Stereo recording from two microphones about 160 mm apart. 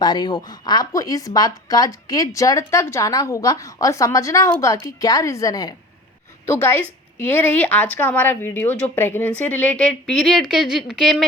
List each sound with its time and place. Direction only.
0.0 s a woman's voice: 25° left (ahead or behind); by 11.3 s centre (ahead or behind)